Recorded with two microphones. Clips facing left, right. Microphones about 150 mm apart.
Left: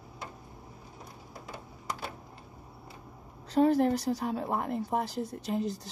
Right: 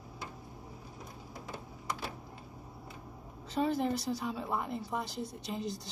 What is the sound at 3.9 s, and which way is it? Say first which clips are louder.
A woman's voice: left 5 dB; 55° left (ahead or behind).